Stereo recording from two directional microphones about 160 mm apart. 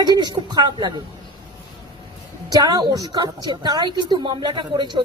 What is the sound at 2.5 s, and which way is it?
A woman's voice, 25° right (ahead or behind).